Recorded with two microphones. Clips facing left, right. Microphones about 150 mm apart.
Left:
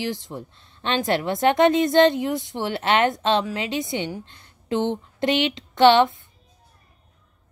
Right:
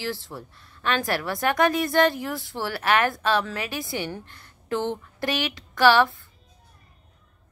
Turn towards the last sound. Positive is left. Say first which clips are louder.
# left 3 dB
turn(degrees=20)  # may be behind; listen again after turning